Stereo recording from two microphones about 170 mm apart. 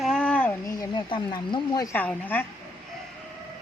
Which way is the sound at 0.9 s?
25° left (ahead or behind).